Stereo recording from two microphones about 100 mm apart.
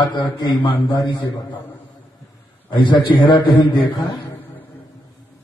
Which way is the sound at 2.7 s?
55° left (ahead or behind).